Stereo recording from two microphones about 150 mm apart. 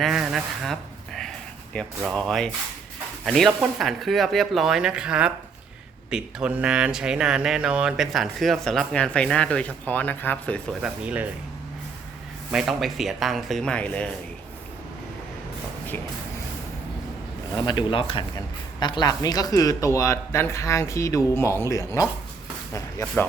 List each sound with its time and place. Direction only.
0.0 s speech: 5° right (ahead or behind)
10.8 s speech: 10° right (ahead or behind)
12.5 s speech: 5° right (ahead or behind)
17.5 s speech: 30° left (ahead or behind)